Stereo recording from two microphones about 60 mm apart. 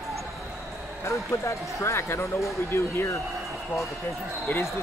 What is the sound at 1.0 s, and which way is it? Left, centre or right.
Speech, left.